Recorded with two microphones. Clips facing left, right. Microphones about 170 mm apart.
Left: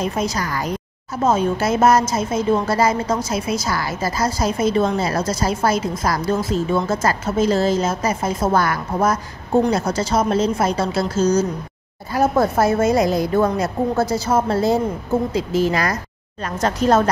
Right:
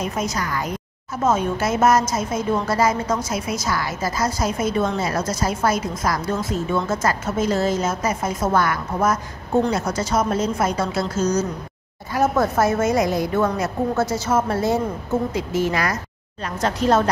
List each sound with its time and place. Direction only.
0.0 s a woman's voice: 30° left (ahead or behind)